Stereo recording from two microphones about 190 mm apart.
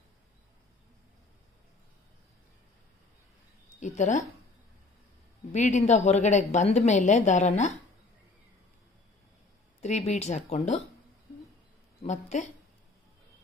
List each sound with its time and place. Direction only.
3.8 s a woman's voice: 40° left (ahead or behind)
5.5 s a woman's voice: 40° left (ahead or behind)
9.8 s a woman's voice: 35° left (ahead or behind)
12.0 s a woman's voice: 35° left (ahead or behind)